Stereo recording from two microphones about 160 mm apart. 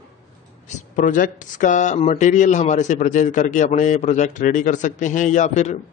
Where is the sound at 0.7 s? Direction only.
50° left (ahead or behind).